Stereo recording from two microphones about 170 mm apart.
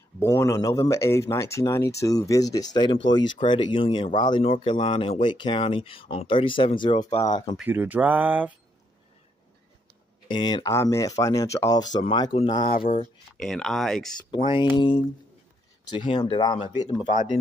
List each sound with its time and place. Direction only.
0.2 s speech: 15° left (ahead or behind)
7.5 s speech: 10° right (ahead or behind)
10.2 s speech: 25° left (ahead or behind)
13.4 s speech: centre (ahead or behind)
14.5 s speech: 25° left (ahead or behind)